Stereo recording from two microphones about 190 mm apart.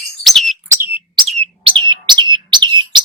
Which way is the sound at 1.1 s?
30° right (ahead or behind).